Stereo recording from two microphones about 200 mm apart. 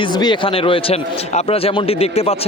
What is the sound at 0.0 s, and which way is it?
Speech, 20° left (ahead or behind).